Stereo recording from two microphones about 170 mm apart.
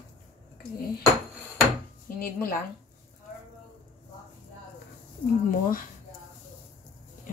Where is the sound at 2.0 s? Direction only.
60° left (ahead or behind).